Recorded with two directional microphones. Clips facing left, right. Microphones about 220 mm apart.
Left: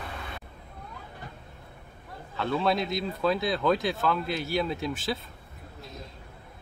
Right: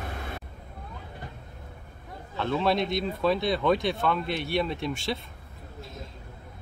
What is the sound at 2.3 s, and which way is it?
Speech, centre (ahead or behind).